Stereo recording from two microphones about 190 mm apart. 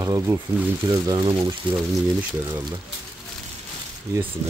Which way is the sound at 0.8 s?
25° right (ahead or behind).